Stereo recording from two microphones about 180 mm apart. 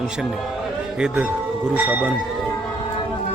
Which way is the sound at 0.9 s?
5° right (ahead or behind).